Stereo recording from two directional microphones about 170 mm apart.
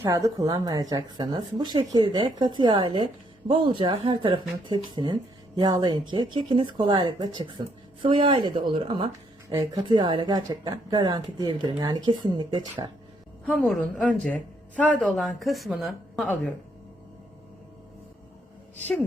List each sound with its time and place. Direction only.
0.0 s speech: 20° right (ahead or behind)
13.5 s speech: 5° left (ahead or behind)